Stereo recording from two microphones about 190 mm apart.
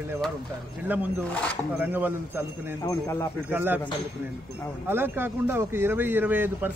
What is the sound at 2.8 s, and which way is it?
Speech, 15° left (ahead or behind).